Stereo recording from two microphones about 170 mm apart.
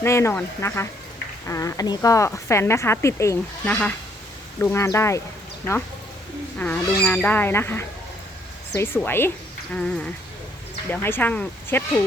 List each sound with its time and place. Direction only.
0.0 s a woman's voice: 15° left (ahead or behind)
6.6 s a woman's voice: 10° left (ahead or behind)
9.0 s a woman's voice: 15° left (ahead or behind)